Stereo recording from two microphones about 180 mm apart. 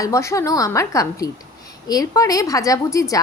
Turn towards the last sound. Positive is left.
turn(degrees=20)  # may be behind; listen again after turning